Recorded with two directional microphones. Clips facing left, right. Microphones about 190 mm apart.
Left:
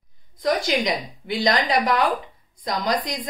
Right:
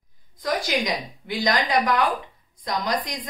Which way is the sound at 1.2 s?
30° left (ahead or behind).